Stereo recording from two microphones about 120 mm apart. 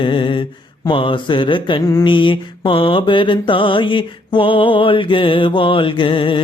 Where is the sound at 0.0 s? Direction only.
45° left (ahead or behind).